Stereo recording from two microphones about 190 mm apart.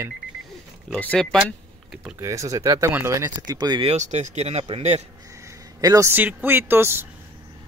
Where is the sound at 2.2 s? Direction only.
15° right (ahead or behind).